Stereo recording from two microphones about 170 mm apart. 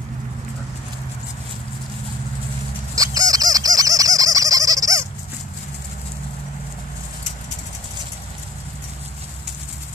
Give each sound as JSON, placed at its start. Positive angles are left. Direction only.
{"t": 3.0, "sound": "bird", "side_deg": -20}